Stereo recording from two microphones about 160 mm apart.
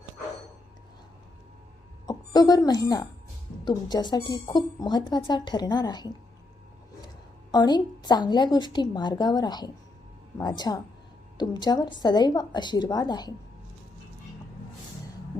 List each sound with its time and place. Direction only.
2.0 s a woman's voice: 25° left (ahead or behind)
7.5 s a woman's voice: 25° left (ahead or behind)